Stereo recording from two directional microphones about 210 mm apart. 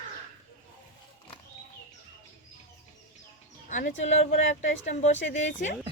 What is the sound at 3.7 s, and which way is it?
Speech, 35° left (ahead or behind).